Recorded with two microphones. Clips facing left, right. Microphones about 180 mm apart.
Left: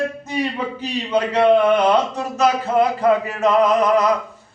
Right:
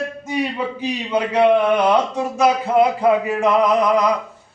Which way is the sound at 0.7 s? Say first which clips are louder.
Left 1 dB; 10° right (ahead or behind).